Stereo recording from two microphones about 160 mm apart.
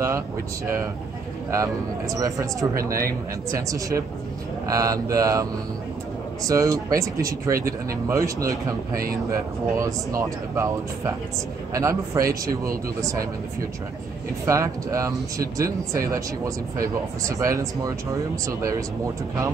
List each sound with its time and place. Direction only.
1.5 s speech: 20° right (ahead or behind)
2.8 s speech: 65° right (ahead or behind)
3.5 s speech: 20° right (ahead or behind)
7.5 s speech: 65° right (ahead or behind)
8.1 s speech: 20° right (ahead or behind)
8.9 s speech: 65° right (ahead or behind)
9.3 s speech: 20° right (ahead or behind)
14.4 s speech: 20° right (ahead or behind)